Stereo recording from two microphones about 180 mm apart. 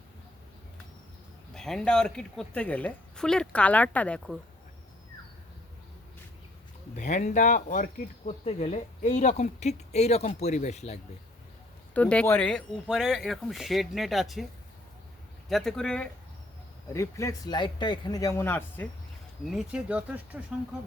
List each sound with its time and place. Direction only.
1.5 s a woman's voice: 5° left (ahead or behind)
6.9 s speech: 45° left (ahead or behind)
11.9 s a woman's voice: 5° left (ahead or behind)
15.4 s a woman's voice: centre (ahead or behind)
16.9 s speech: 15° left (ahead or behind)
19.5 s speech: 5° right (ahead or behind)